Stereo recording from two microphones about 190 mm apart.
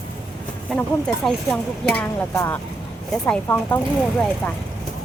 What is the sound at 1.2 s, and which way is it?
Speech, 5° left (ahead or behind).